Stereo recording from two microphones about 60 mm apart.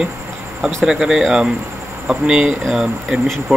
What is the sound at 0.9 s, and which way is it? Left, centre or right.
Speech, centre.